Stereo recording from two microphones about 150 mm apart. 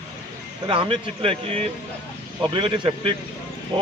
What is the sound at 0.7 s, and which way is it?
A man's voice, 35° right (ahead or behind).